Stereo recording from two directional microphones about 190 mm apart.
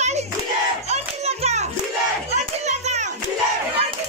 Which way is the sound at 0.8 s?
35° right (ahead or behind).